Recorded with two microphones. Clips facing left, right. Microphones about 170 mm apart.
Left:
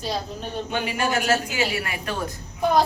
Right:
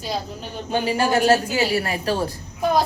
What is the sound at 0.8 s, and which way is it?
A woman's voice, 35° right (ahead or behind).